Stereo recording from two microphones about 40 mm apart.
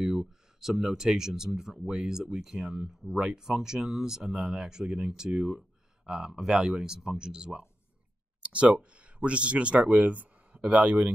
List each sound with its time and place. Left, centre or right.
0.0 s speech: centre
8.4 s speech: right